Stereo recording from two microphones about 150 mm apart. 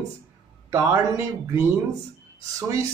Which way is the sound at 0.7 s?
20° right (ahead or behind).